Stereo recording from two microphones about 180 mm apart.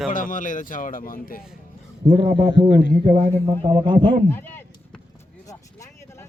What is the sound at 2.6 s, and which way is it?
Speech, 75° left (ahead or behind).